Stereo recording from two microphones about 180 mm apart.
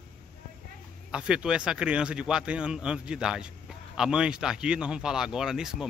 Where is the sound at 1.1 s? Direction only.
5° right (ahead or behind).